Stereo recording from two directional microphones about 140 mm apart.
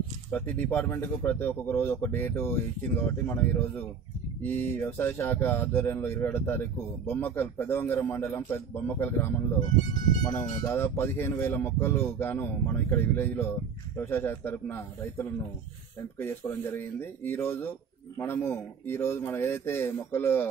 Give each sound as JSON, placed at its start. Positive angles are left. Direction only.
{"t": 0.3, "sound": "speech", "side_deg": 10}